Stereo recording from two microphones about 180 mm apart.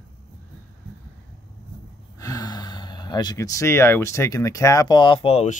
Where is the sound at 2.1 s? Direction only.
20° left (ahead or behind).